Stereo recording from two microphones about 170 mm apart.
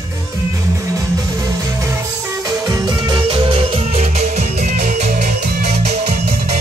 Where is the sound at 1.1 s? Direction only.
20° right (ahead or behind); by 6.3 s 40° right (ahead or behind).